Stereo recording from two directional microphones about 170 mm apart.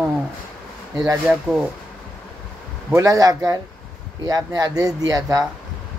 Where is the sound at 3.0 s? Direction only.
20° right (ahead or behind).